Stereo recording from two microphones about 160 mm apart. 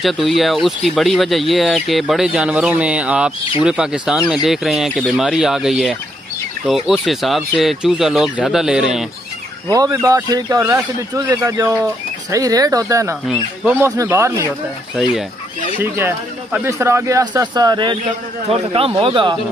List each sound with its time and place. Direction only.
0.0 s speech: centre (ahead or behind)
9.7 s a man's voice: 20° right (ahead or behind)
15.8 s a man's voice: 15° right (ahead or behind)
18.5 s speech: 35° right (ahead or behind)